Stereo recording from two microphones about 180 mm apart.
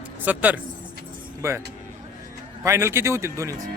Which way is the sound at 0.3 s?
10° right (ahead or behind).